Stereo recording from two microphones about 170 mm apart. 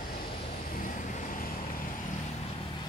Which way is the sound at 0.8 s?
45° left (ahead or behind).